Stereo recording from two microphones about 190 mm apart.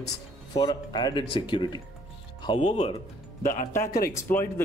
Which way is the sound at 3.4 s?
45° left (ahead or behind).